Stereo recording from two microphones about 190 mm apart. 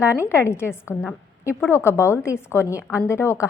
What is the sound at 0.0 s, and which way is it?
A woman's voice, 15° left (ahead or behind).